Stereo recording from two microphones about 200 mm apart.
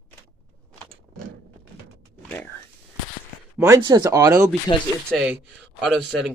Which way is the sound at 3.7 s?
20° right (ahead or behind).